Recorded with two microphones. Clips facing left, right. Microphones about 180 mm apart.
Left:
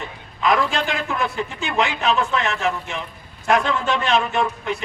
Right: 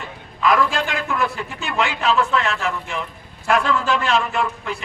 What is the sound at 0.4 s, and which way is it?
A man's voice, 30° left (ahead or behind).